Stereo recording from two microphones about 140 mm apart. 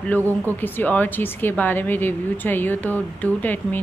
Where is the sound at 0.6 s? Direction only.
10° left (ahead or behind).